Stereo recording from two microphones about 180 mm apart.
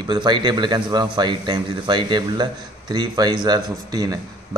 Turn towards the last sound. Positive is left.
turn(degrees=-20)  # may be behind; listen again after turning